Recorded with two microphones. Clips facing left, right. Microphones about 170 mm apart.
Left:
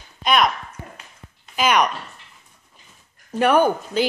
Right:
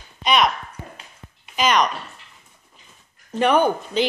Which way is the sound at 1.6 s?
10° left (ahead or behind).